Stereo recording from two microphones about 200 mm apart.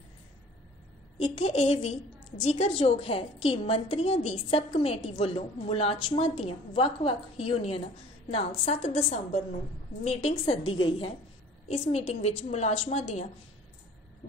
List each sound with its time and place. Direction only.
1.2 s a woman's voice: 30° left (ahead or behind)